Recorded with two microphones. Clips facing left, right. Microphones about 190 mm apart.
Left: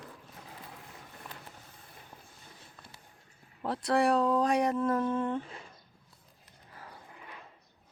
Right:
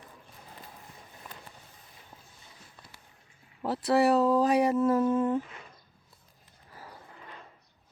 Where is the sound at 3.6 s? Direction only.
5° right (ahead or behind).